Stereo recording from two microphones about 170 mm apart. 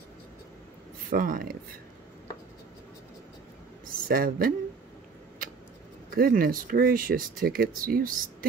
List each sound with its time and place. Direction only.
1.1 s speech: 55° right (ahead or behind)
4.1 s speech: 55° right (ahead or behind)
6.1 s speech: 60° right (ahead or behind)